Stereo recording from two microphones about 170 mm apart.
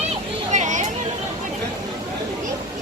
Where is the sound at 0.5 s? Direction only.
45° right (ahead or behind).